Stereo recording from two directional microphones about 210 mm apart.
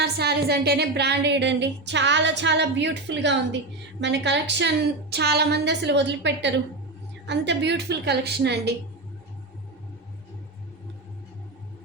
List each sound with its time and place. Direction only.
0.0 s a woman's voice: 50° right (ahead or behind)